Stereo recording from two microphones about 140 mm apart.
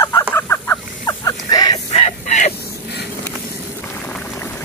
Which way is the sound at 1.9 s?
55° left (ahead or behind).